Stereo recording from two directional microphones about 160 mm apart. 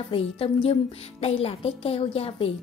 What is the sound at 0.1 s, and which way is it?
A woman's voice, 35° left (ahead or behind).